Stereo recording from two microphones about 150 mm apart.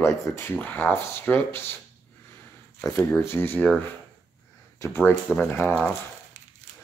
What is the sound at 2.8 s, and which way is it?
Speech, 15° left (ahead or behind).